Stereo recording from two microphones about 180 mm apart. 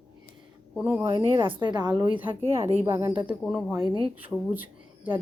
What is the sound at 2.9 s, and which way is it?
Speech, 15° right (ahead or behind).